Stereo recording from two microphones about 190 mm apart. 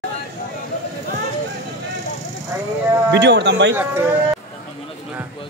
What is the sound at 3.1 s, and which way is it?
Speech, 60° right (ahead or behind).